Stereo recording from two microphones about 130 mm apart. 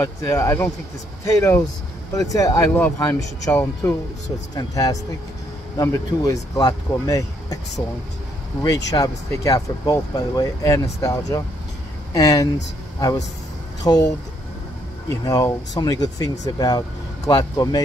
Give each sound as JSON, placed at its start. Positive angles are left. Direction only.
{"t": 0.0, "sound": "speech", "side_deg": 25}
{"t": 8.6, "sound": "speech", "side_deg": 25}
{"t": 13.8, "sound": "speech", "side_deg": 30}
{"t": 15.2, "sound": "speech", "side_deg": 30}